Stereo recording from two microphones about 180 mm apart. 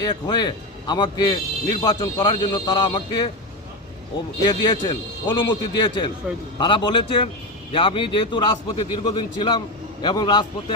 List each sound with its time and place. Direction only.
0.0 s a man's voice: 25° left (ahead or behind)
4.4 s a man's voice: 25° left (ahead or behind)